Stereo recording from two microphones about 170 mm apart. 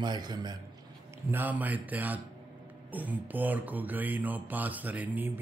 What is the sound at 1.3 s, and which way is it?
Mantra, 10° right (ahead or behind).